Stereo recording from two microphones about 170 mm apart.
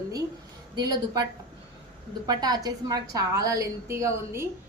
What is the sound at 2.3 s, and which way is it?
A woman's voice, 25° right (ahead or behind).